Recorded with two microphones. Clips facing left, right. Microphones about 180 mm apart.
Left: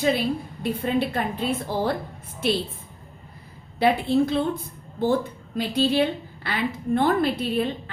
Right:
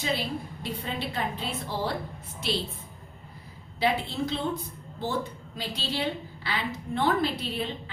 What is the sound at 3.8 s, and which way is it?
Speech, 55° left (ahead or behind).